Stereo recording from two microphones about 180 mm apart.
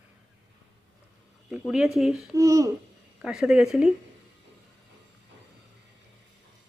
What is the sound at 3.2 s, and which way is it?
Speech, 5° right (ahead or behind).